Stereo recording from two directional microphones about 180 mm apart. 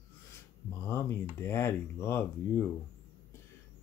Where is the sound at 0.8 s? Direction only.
15° left (ahead or behind).